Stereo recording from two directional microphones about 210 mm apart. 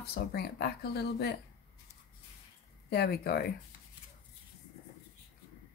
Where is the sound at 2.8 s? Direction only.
50° left (ahead or behind).